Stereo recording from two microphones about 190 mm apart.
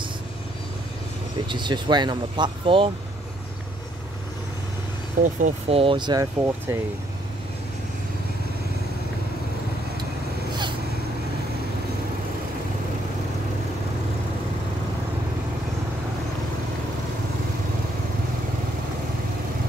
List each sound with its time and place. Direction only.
1.5 s speech: 25° right (ahead or behind)
5.2 s speech: 35° right (ahead or behind); by 6.8 s 15° right (ahead or behind)